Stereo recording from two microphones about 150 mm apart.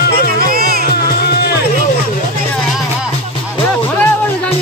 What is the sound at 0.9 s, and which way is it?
Music, 90° left.